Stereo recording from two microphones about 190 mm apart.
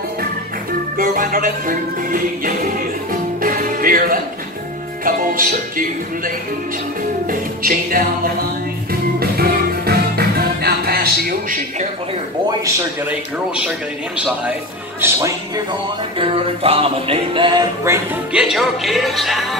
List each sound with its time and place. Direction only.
0.9 s music: 45° right (ahead or behind)
9.2 s music: 55° right (ahead or behind)
13.7 s speech: 5° right (ahead or behind)
16.2 s music: 30° right (ahead or behind); by 18.4 s 15° right (ahead or behind)
18.4 s speech: centre (ahead or behind)